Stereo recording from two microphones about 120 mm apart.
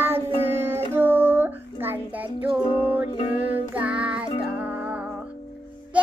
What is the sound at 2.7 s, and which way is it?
Music, 15° right (ahead or behind).